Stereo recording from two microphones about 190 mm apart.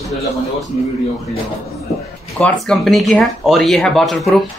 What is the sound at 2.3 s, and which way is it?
Speech, 5° left (ahead or behind).